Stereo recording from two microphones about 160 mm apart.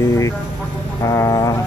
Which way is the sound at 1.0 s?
20° left (ahead or behind).